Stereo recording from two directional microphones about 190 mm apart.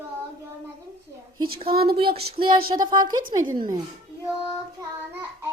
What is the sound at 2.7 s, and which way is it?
A woman's voice, 20° right (ahead or behind).